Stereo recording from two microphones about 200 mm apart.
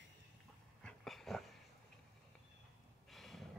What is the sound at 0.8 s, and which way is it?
Dog, 5° left (ahead or behind).